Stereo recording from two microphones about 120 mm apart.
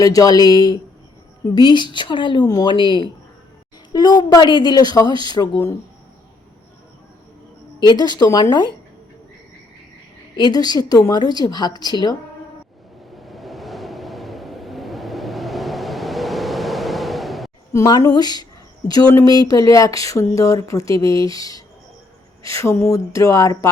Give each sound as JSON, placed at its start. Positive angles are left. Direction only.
{"t": 0.0, "sound": "speech", "side_deg": 30}
{"t": 7.8, "sound": "speech", "side_deg": 35}
{"t": 10.3, "sound": "speech", "side_deg": 35}
{"t": 13.1, "sound": "vehicle", "side_deg": 0}
{"t": 17.7, "sound": "speech", "side_deg": 30}